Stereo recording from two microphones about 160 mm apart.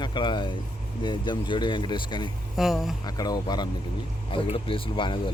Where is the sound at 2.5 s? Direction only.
Centre (ahead or behind).